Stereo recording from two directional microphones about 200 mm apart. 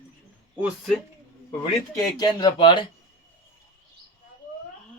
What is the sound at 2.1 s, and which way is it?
Speech, 20° left (ahead or behind).